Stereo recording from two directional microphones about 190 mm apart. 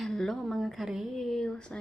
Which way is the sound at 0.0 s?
Centre (ahead or behind).